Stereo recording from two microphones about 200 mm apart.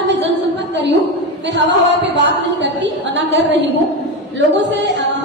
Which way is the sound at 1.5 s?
60° right (ahead or behind).